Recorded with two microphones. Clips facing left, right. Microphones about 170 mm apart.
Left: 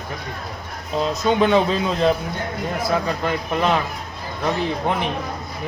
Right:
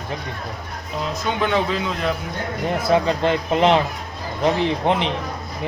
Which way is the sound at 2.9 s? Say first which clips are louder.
Right 6 dB; 25° right (ahead or behind).